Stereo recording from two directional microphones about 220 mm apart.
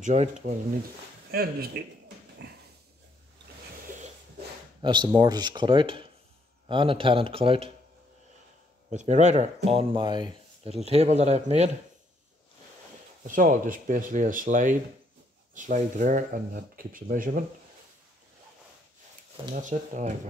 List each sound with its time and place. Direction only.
0.0 s speech: 30° right (ahead or behind)
1.3 s speech: 45° right (ahead or behind)
2.4 s a sound: 55° right (ahead or behind)
4.8 s speech: 20° right (ahead or behind)
8.9 s speech: 30° right (ahead or behind)
13.3 s speech: 35° right (ahead or behind)
19.5 s speech: 35° right (ahead or behind)